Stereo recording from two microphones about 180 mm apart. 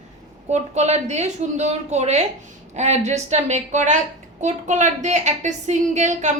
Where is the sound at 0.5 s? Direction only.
40° right (ahead or behind).